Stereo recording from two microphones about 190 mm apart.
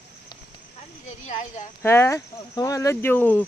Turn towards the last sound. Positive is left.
turn(degrees=10)  # may be behind; listen again after turning